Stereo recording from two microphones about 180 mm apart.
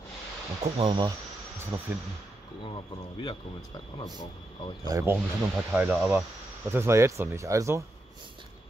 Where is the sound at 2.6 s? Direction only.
25° left (ahead or behind).